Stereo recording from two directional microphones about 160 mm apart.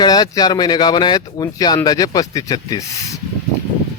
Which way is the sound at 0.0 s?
25° left (ahead or behind).